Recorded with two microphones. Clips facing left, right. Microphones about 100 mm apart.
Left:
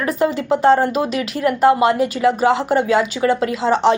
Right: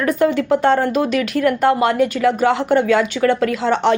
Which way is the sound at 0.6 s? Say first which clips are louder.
Left 4 dB; 30° left (ahead or behind).